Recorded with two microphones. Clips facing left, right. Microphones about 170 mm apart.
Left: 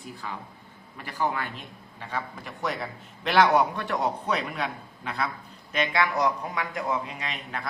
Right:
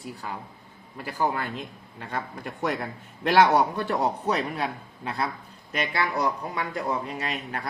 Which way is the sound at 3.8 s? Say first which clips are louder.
Right 2 dB; 35° right (ahead or behind).